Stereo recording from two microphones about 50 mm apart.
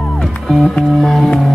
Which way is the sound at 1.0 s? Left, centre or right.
Centre.